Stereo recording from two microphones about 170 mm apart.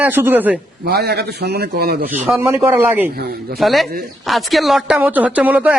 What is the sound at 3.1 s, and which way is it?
Speech, 65° right (ahead or behind).